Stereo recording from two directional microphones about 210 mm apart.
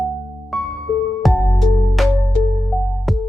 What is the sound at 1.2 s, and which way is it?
Music, centre (ahead or behind).